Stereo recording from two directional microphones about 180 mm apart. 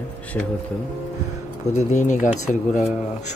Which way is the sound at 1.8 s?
45° left (ahead or behind).